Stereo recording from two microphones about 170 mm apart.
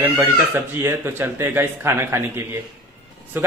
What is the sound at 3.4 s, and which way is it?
Speech, 10° right (ahead or behind).